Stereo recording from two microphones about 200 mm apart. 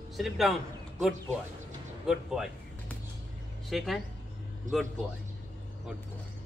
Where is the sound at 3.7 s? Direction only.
Centre (ahead or behind).